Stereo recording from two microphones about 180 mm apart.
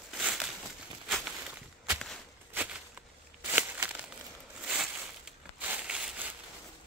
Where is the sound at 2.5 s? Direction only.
5° right (ahead or behind).